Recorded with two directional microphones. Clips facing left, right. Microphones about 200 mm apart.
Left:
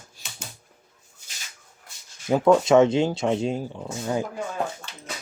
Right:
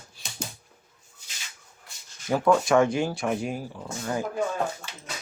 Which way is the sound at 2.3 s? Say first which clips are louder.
Left 4 dB; 20° left (ahead or behind).